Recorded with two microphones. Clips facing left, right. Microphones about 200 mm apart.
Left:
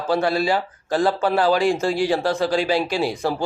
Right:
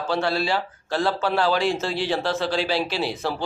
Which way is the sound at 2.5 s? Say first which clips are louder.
Left 4 dB; 50° left (ahead or behind).